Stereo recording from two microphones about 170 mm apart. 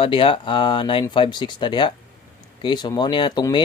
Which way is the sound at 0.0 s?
30° left (ahead or behind).